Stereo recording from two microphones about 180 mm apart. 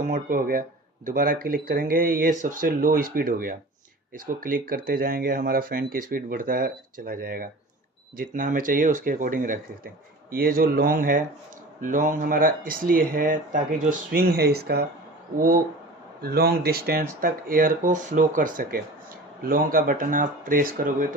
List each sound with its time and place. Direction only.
0.0 s speech: 50° right (ahead or behind)
15.4 s speech: 50° right (ahead or behind)